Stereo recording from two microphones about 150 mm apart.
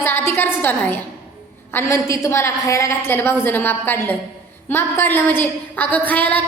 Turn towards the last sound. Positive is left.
turn(degrees=10)  # may be behind; listen again after turning